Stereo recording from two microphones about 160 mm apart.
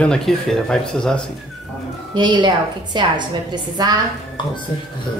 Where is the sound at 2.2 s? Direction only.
25° right (ahead or behind).